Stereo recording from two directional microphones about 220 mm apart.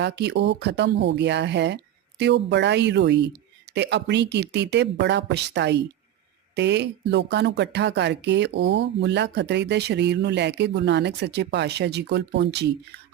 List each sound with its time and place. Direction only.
0.0 s speech: 50° right (ahead or behind)